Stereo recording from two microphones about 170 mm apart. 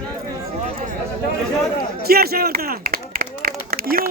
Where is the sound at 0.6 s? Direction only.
50° right (ahead or behind).